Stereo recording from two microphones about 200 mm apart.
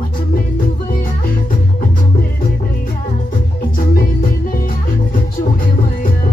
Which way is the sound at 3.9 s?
45° left (ahead or behind).